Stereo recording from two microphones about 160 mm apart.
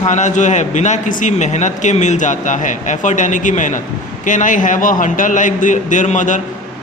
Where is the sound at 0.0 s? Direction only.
50° left (ahead or behind).